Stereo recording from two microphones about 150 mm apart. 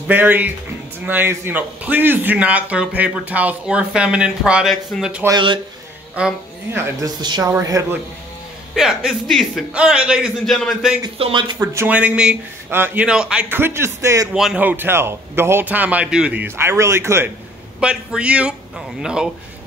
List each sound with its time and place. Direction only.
0.1 s a man's voice: 10° right (ahead or behind)
7.0 s speech: 30° right (ahead or behind)
8.7 s a man's voice: 5° right (ahead or behind)
11.1 s speech: 35° right (ahead or behind)
11.7 s a man's voice: 10° right (ahead or behind)
14.3 s a man's voice: 5° right (ahead or behind)
17.7 s a man's voice: 5° right (ahead or behind)